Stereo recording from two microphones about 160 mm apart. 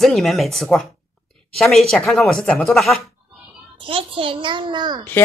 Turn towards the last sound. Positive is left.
turn(degrees=-30)  # may be behind; listen again after turning